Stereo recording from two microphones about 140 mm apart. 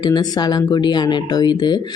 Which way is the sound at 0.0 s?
30° left (ahead or behind).